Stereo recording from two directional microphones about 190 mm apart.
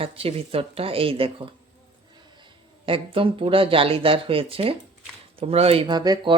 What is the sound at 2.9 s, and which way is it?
Speech, 30° right (ahead or behind).